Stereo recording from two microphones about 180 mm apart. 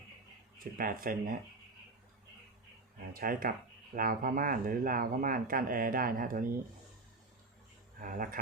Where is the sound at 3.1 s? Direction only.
50° right (ahead or behind).